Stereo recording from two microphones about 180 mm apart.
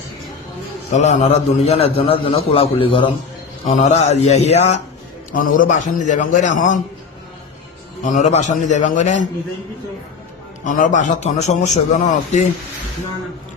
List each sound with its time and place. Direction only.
0.9 s a man's voice: 40° left (ahead or behind)
3.6 s a man's voice: 40° left (ahead or behind)
5.3 s a man's voice: 50° left (ahead or behind)
8.0 s a man's voice: 40° left (ahead or behind)
10.6 s a man's voice: 45° left (ahead or behind)